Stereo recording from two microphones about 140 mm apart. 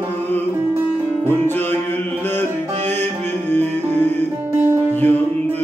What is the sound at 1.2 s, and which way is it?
Music, 15° left (ahead or behind).